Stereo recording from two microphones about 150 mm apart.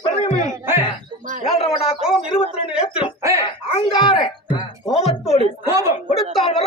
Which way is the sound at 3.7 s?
35° left (ahead or behind).